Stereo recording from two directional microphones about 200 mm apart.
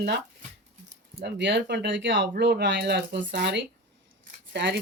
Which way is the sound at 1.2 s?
60° right (ahead or behind).